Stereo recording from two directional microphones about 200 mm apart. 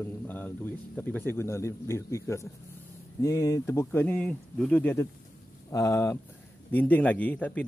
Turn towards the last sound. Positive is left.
turn(degrees=10)  # may be behind; listen again after turning